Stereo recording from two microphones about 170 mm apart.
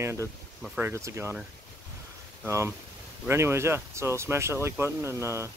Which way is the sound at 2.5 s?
15° right (ahead or behind).